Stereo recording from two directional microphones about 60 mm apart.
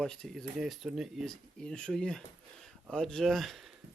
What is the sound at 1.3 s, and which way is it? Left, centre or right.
Speech, centre.